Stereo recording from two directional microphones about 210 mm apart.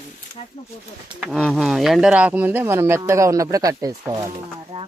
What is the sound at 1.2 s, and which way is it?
Speech, centre (ahead or behind).